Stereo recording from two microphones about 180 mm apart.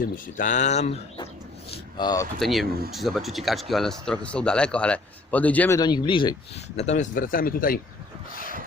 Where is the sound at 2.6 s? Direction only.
55° right (ahead or behind).